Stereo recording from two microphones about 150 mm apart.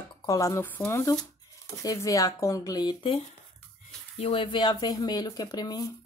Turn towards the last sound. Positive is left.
turn(degrees=25)  # may be behind; listen again after turning